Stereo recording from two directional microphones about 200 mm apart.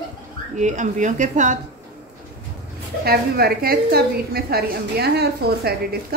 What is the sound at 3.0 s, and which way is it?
A woman's voice, 50° right (ahead or behind).